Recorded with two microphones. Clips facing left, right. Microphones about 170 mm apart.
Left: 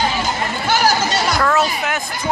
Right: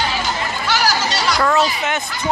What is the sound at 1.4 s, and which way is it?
Speech, centre (ahead or behind).